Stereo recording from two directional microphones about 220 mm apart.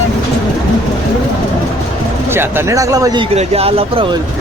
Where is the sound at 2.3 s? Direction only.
10° right (ahead or behind).